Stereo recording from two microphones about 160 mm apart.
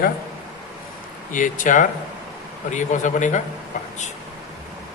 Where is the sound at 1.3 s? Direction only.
55° left (ahead or behind).